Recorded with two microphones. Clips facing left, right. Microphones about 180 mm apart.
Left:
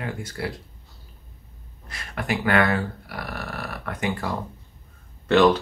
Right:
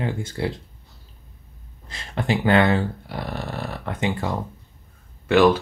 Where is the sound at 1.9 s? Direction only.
25° right (ahead or behind).